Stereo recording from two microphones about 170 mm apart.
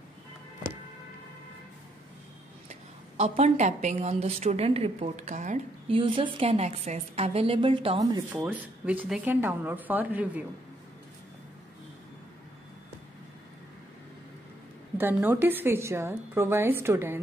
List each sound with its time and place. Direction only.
2.7 s a woman's voice: 40° right (ahead or behind)
5.9 s a woman's voice: 30° right (ahead or behind)
8.3 s a woman's voice: 10° right (ahead or behind)
15.0 s a woman's voice: 10° right (ahead or behind)